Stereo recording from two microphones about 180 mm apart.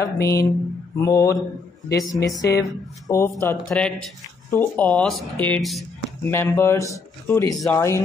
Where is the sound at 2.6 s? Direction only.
20° left (ahead or behind).